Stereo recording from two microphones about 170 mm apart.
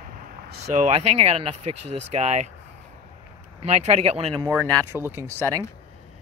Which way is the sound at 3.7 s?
40° right (ahead or behind).